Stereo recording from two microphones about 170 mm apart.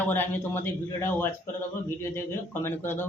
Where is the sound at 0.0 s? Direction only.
10° left (ahead or behind).